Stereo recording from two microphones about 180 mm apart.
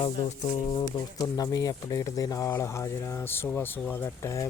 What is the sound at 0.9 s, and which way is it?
Speech, 20° left (ahead or behind).